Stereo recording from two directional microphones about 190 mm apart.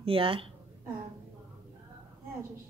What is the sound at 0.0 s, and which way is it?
Speech, 30° right (ahead or behind).